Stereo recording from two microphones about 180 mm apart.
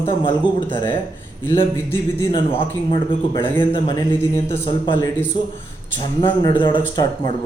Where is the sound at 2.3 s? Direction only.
25° left (ahead or behind).